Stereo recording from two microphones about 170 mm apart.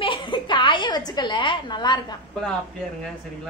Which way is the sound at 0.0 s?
30° left (ahead or behind).